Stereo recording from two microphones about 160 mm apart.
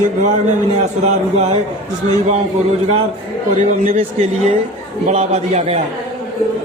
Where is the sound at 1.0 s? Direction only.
45° right (ahead or behind).